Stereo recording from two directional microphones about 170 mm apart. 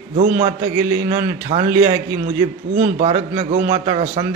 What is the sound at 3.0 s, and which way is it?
A man's voice, 35° right (ahead or behind).